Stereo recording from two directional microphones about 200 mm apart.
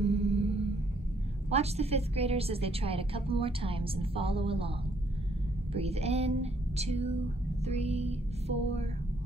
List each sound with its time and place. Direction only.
0.0 s music: 30° right (ahead or behind)
1.5 s a woman's voice: 30° right (ahead or behind)